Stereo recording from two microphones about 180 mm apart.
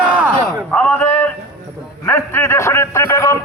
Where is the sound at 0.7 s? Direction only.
10° left (ahead or behind).